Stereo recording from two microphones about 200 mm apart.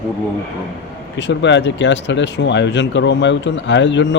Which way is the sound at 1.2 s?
65° left (ahead or behind).